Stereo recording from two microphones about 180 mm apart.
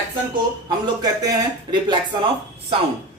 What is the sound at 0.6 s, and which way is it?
Speech, 20° right (ahead or behind).